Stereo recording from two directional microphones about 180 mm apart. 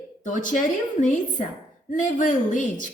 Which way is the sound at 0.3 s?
45° left (ahead or behind).